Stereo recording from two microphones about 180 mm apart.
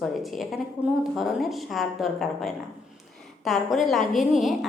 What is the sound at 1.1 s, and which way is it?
A woman's voice, centre (ahead or behind).